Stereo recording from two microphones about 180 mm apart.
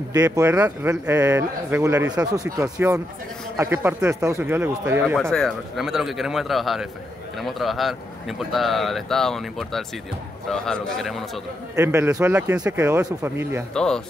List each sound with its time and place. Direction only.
0.1 s speech: 15° right (ahead or behind)
5.3 s a man's voice: centre (ahead or behind)
11.7 s speech: 15° right (ahead or behind)
13.7 s a man's voice: 5° left (ahead or behind)